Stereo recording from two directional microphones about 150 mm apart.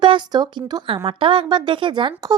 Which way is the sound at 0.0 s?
30° right (ahead or behind).